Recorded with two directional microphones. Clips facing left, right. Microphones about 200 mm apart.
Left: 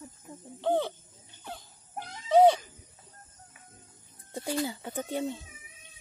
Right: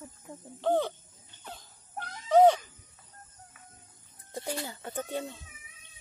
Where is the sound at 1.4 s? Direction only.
10° left (ahead or behind).